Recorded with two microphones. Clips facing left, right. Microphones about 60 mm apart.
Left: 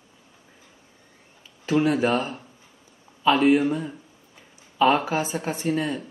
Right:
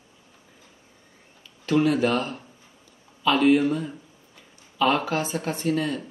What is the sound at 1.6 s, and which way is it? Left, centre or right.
Speech, centre.